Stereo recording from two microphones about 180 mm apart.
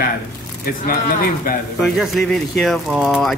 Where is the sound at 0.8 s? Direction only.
50° left (ahead or behind).